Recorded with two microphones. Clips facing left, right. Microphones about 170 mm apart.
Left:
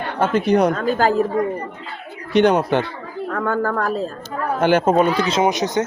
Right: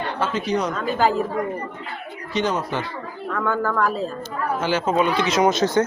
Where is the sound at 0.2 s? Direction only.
55° left (ahead or behind).